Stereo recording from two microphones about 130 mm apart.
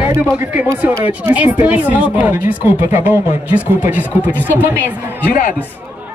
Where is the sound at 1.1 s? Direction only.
10° right (ahead or behind).